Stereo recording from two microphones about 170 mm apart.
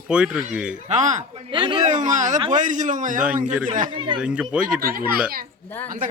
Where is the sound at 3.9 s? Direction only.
30° right (ahead or behind).